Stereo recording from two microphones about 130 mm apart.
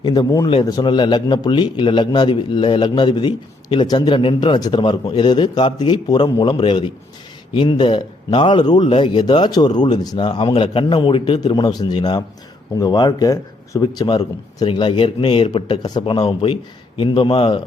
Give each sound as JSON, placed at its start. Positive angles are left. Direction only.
{"t": 0.0, "sound": "a man's voice", "side_deg": 35}
{"t": 14.6, "sound": "a man's voice", "side_deg": 40}